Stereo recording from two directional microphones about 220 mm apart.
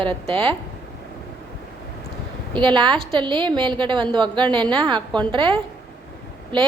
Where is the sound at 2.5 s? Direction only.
20° right (ahead or behind).